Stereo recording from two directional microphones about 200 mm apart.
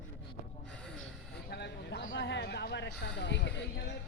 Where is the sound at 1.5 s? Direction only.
55° left (ahead or behind).